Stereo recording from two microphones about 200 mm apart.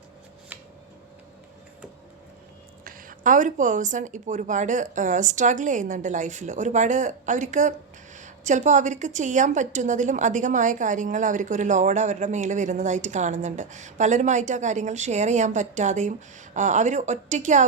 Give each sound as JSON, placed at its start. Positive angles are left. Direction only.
{"t": 0.5, "sound": "scissors", "side_deg": -10}
{"t": 2.8, "sound": "a woman's voice", "side_deg": -40}